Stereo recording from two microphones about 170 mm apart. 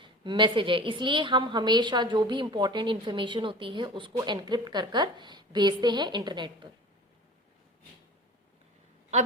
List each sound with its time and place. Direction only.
0.0 s a woman's voice: 30° right (ahead or behind)
9.1 s a woman's voice: 45° right (ahead or behind)